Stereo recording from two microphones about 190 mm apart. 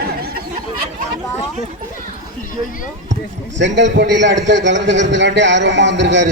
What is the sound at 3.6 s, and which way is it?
A man's voice, 70° right (ahead or behind).